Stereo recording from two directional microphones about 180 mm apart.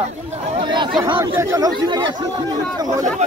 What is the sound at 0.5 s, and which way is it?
Chatter, 25° right (ahead or behind).